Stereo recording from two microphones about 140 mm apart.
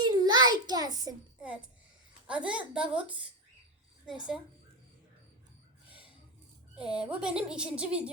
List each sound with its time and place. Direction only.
0.0 s child singing: 30° right (ahead or behind)
1.4 s a woman's voice: 10° right (ahead or behind)
6.7 s a woman's voice: 5° right (ahead or behind)